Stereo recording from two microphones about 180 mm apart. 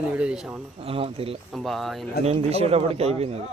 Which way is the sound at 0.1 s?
5° right (ahead or behind).